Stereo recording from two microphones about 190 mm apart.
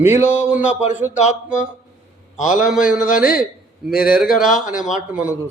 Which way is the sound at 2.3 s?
40° left (ahead or behind).